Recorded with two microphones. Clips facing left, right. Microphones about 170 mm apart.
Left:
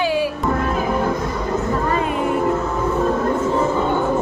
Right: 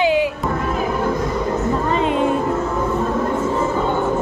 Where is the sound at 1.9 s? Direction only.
25° right (ahead or behind).